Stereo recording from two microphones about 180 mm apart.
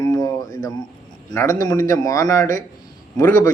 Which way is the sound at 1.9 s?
20° left (ahead or behind).